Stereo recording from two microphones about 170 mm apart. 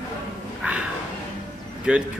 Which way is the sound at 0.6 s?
5° right (ahead or behind).